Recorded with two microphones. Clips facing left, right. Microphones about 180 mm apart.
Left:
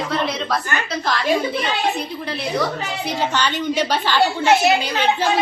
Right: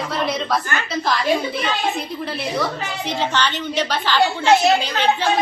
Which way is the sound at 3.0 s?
10° left (ahead or behind).